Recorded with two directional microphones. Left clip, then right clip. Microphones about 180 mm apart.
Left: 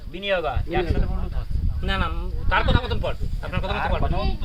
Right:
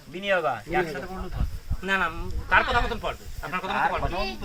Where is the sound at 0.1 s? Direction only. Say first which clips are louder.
Even; 60° left (ahead or behind).